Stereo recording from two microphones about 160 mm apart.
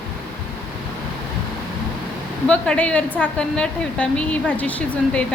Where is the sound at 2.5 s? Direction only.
10° left (ahead or behind).